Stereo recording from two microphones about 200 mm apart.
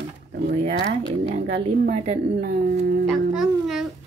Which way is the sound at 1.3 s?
30° right (ahead or behind).